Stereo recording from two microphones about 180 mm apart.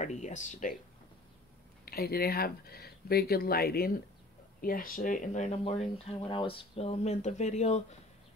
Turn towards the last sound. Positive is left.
turn(degrees=40)  # may be behind; listen again after turning